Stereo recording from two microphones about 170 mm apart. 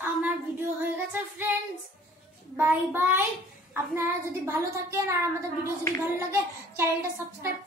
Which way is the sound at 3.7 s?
15° right (ahead or behind).